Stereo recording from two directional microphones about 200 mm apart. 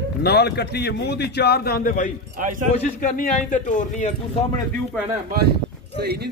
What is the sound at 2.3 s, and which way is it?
Speech, 40° right (ahead or behind).